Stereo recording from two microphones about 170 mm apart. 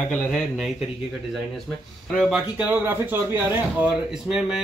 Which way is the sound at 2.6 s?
15° right (ahead or behind).